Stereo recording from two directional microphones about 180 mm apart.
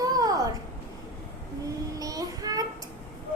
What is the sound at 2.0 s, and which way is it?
Speech, 20° right (ahead or behind).